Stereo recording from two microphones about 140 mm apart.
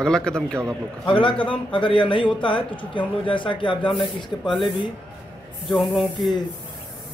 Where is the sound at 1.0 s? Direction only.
35° left (ahead or behind).